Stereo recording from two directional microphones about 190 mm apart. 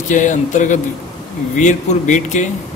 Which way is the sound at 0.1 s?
40° left (ahead or behind).